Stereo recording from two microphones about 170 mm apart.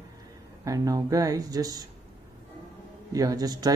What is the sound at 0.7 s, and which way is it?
Speech, 20° right (ahead or behind).